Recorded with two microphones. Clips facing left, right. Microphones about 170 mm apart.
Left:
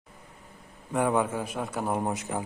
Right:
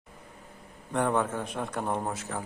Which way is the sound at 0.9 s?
10° left (ahead or behind).